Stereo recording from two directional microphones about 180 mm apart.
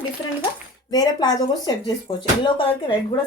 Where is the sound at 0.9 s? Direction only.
20° left (ahead or behind).